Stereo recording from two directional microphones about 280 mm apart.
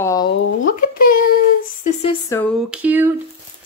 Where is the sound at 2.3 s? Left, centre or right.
Centre.